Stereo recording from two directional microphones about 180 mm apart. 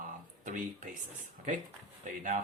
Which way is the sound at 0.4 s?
45° right (ahead or behind).